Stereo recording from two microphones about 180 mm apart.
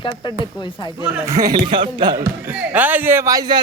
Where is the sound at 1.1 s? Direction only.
10° right (ahead or behind).